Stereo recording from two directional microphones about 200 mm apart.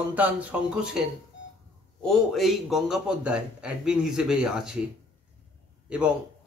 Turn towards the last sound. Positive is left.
turn(degrees=-5)  # may be behind; listen again after turning